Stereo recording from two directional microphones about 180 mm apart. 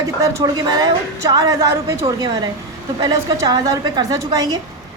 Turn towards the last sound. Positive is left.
turn(degrees=-20)  # may be behind; listen again after turning